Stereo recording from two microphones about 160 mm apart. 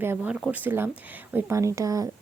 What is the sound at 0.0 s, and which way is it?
A woman's voice, 10° right (ahead or behind).